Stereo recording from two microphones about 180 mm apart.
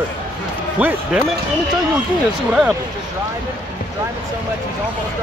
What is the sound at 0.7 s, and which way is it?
Speech, 5° right (ahead or behind).